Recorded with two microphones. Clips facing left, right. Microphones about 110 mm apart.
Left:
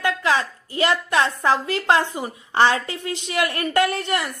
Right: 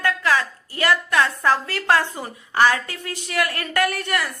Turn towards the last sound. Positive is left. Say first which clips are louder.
# left 2 dB
turn(degrees=25)  # may be behind; listen again after turning